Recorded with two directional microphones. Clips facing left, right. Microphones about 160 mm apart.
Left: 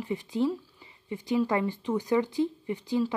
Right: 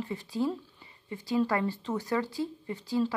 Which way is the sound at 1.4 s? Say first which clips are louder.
Left 2 dB; 20° left (ahead or behind).